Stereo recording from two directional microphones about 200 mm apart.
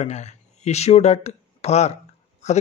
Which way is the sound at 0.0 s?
35° left (ahead or behind).